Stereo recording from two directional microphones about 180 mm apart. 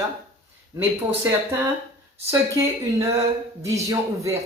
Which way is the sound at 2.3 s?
15° right (ahead or behind).